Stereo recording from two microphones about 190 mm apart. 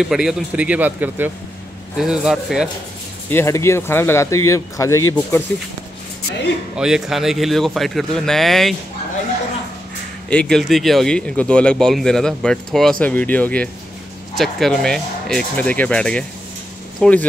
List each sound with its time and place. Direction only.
0.1 s a man's voice: 5° right (ahead or behind)
3.3 s speech: 15° left (ahead or behind)
6.8 s speech: centre (ahead or behind)
10.3 s speech: 5° left (ahead or behind)